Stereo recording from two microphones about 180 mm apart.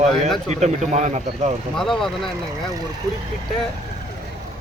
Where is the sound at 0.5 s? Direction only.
40° right (ahead or behind).